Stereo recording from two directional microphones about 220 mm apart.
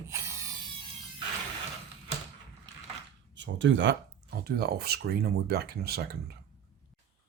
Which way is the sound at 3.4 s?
55° right (ahead or behind).